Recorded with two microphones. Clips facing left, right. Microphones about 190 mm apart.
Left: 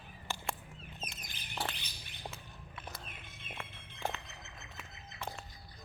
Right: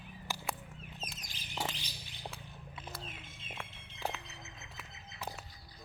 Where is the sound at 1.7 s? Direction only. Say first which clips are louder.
Right 2 dB; 60° left (ahead or behind).